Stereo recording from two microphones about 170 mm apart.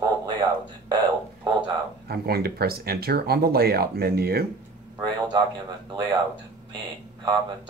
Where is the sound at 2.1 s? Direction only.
65° right (ahead or behind).